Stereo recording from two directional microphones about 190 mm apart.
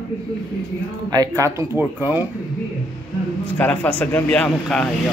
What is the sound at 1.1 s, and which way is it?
Speech, 20° right (ahead or behind).